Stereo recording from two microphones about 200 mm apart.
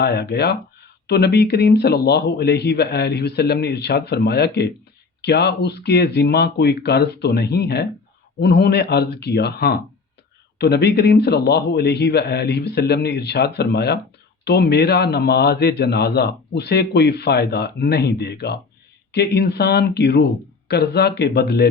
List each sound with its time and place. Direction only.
0.0 s a man's voice: 55° left (ahead or behind)